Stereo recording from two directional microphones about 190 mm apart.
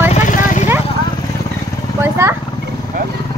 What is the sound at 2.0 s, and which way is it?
Speech, 10° right (ahead or behind).